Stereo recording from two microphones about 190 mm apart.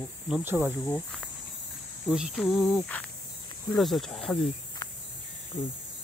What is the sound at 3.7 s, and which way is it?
Speech, centre (ahead or behind).